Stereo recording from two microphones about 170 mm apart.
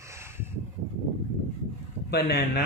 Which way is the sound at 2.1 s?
70° left (ahead or behind).